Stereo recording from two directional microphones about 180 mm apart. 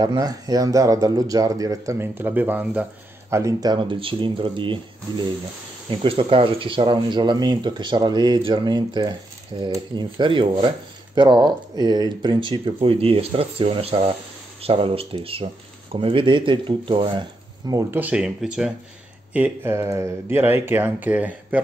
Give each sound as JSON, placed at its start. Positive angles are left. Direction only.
{"t": 0.0, "sound": "speech", "side_deg": -20}